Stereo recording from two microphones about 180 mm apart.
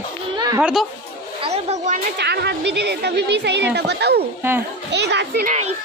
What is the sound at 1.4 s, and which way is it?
Speech, 35° right (ahead or behind).